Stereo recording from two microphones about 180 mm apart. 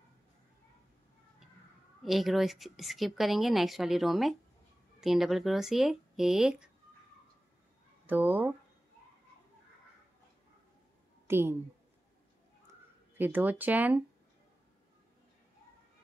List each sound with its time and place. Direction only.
2.0 s speech: centre (ahead or behind)
8.1 s speech: 10° right (ahead or behind)
11.2 s a woman's voice: 15° right (ahead or behind)
13.2 s speech: 10° right (ahead or behind)